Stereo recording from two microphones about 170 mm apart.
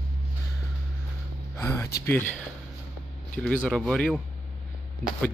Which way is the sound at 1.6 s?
15° left (ahead or behind).